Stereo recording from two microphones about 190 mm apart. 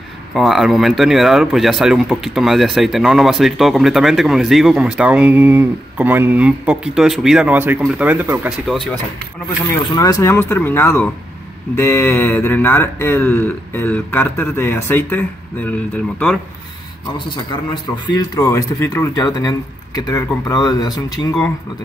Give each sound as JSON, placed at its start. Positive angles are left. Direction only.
{"t": 0.3, "sound": "speech", "side_deg": 0}
{"t": 8.6, "sound": "speech", "side_deg": 0}
{"t": 9.9, "sound": "speech", "side_deg": 20}
{"t": 18.0, "sound": "speech", "side_deg": 20}